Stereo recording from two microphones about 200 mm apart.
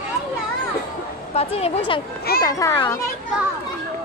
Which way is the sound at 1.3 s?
30° left (ahead or behind).